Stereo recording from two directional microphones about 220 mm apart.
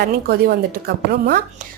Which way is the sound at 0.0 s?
45° right (ahead or behind).